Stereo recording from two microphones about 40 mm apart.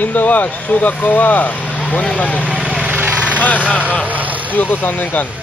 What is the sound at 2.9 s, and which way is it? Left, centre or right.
Vehicle, right.